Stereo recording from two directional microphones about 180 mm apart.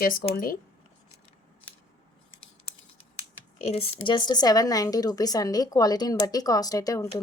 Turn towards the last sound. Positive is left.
turn(degrees=20)  # may be behind; listen again after turning